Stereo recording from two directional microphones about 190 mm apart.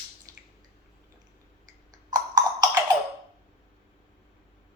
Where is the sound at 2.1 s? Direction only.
20° right (ahead or behind).